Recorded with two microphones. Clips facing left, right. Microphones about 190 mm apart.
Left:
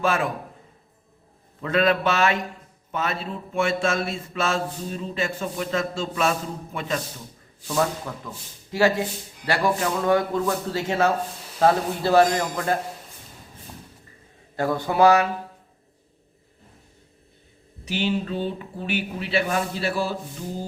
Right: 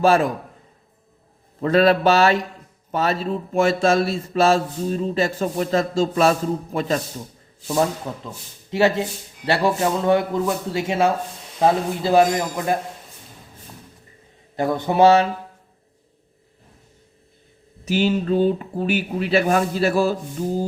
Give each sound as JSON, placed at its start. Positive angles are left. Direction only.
{"t": 0.0, "sound": "a man's voice", "side_deg": -35}
{"t": 1.6, "sound": "a man's voice", "side_deg": -35}
{"t": 7.7, "sound": "a man's voice", "side_deg": -25}
{"t": 14.5, "sound": "a man's voice", "side_deg": -20}
{"t": 17.8, "sound": "speech", "side_deg": -45}